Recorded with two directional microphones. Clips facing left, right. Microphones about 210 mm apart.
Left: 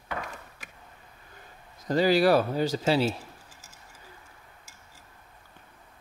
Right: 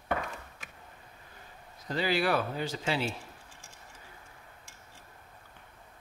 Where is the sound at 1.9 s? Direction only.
40° left (ahead or behind).